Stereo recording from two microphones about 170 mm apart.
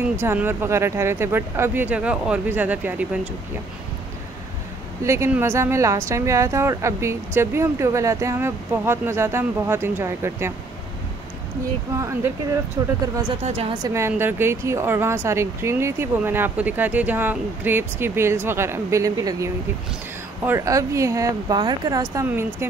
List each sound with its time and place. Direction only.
0.1 s speech: 15° right (ahead or behind)
5.0 s speech: 15° right (ahead or behind)
12.0 s speech: 15° right (ahead or behind)
13.4 s a woman's voice: 35° right (ahead or behind)
13.8 s speech: 15° right (ahead or behind)